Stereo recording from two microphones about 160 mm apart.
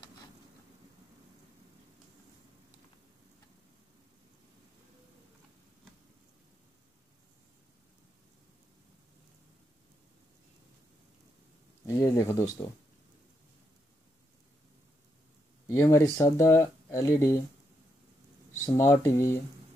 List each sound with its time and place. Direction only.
11.8 s speech: 20° left (ahead or behind)
15.7 s speech: 15° left (ahead or behind)
18.8 s speech: 15° left (ahead or behind)